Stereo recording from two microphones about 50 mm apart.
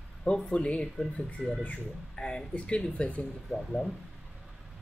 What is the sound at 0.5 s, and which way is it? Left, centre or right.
Speech, left.